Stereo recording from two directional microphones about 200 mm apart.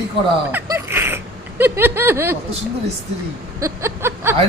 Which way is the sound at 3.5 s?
15° right (ahead or behind).